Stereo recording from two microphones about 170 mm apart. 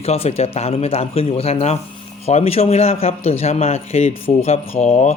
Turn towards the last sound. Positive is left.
turn(degrees=40)  # may be behind; listen again after turning